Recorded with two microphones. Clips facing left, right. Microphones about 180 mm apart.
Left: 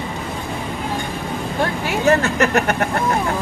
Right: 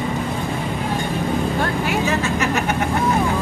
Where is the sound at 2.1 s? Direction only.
60° left (ahead or behind).